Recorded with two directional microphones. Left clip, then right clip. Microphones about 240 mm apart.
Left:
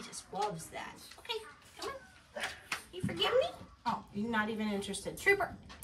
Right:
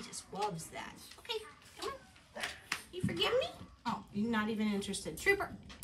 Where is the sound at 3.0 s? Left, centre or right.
Centre.